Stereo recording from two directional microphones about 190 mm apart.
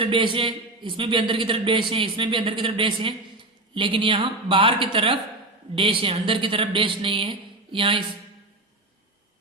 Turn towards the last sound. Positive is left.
turn(degrees=-25)  # may be behind; listen again after turning